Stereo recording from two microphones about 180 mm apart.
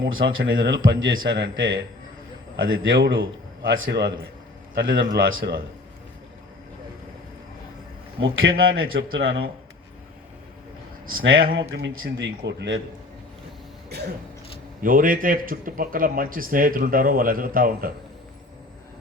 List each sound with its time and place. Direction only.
0.0 s speech: 90° right
0.3 s a man's voice: 60° right (ahead or behind); by 0.9 s 75° right (ahead or behind)
1.4 s speech: 90° right
2.6 s a man's voice: 60° right (ahead or behind)
4.7 s a man's voice: 55° right (ahead or behind)
8.2 s a man's voice: 70° right (ahead or behind)
11.5 s speech: 75° right (ahead or behind)
14.8 s a man's voice: 50° right (ahead or behind)